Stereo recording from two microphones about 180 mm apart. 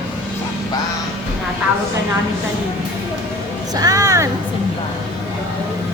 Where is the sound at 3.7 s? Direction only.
20° right (ahead or behind).